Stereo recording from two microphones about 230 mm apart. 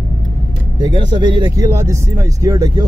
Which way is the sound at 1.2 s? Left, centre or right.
Centre.